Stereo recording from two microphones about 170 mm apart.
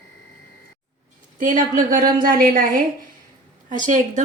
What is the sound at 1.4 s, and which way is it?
A woman's voice, 50° right (ahead or behind).